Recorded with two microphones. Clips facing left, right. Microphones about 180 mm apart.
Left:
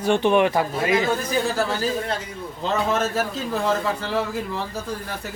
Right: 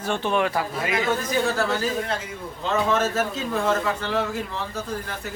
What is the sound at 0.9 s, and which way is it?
Speech, 30° left (ahead or behind).